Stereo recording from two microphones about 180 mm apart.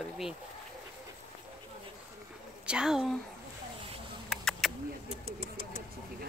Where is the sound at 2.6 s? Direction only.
5° right (ahead or behind).